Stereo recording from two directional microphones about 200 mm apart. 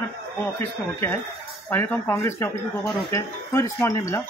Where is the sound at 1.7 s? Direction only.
10° left (ahead or behind).